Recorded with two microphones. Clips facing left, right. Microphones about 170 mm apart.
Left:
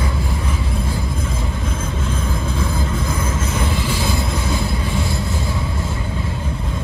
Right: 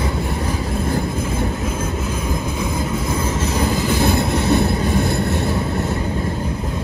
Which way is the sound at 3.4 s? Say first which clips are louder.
Right 3 dB; 35° right (ahead or behind).